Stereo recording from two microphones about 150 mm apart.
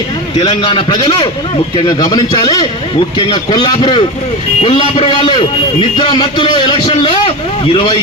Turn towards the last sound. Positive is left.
turn(degrees=35)  # may be behind; listen again after turning